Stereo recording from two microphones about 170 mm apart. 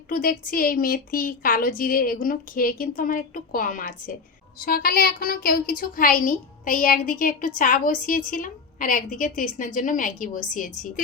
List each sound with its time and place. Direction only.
0.1 s a woman's voice: 55° left (ahead or behind)